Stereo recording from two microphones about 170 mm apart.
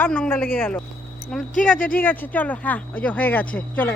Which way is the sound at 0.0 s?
10° left (ahead or behind).